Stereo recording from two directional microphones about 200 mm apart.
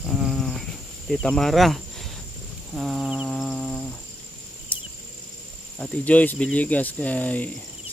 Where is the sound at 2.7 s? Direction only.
Centre (ahead or behind).